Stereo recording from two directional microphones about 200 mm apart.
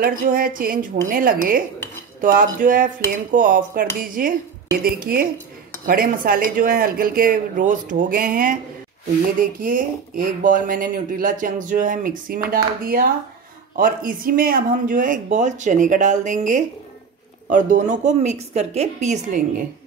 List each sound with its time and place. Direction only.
0.0 s speech: 45° right (ahead or behind)